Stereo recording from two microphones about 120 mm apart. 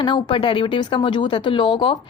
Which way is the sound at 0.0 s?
40° left (ahead or behind).